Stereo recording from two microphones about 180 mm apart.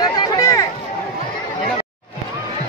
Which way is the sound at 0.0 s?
20° left (ahead or behind).